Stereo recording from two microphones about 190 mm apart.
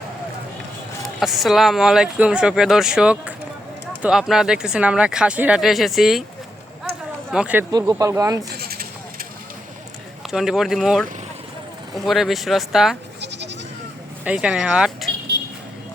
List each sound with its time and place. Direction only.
1.2 s speech: centre (ahead or behind)
7.3 s speech: 5° right (ahead or behind)
7.7 s speech: 20° right (ahead or behind)
8.4 s a sound: 55° right (ahead or behind)
10.3 s speech: centre (ahead or behind)
13.2 s goat: 65° right (ahead or behind)
14.3 s speech: 5° right (ahead or behind)